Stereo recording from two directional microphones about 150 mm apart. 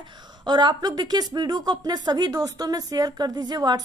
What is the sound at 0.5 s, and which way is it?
A woman's voice, 30° right (ahead or behind).